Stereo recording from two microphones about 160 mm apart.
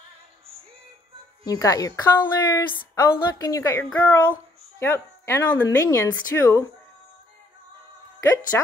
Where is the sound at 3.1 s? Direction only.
25° left (ahead or behind).